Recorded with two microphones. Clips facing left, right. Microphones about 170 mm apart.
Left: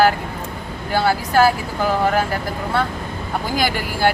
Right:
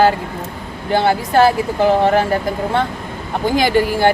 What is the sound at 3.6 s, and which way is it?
Speech, 20° right (ahead or behind).